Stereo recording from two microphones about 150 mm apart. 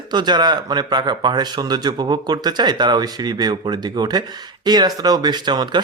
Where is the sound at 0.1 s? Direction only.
30° right (ahead or behind).